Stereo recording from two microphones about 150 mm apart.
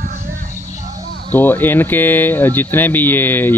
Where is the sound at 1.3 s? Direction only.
15° left (ahead or behind).